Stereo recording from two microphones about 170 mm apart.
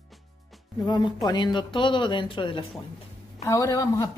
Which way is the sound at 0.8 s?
25° left (ahead or behind).